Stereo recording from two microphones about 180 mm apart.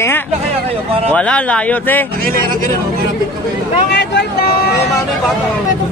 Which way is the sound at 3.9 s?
70° left (ahead or behind).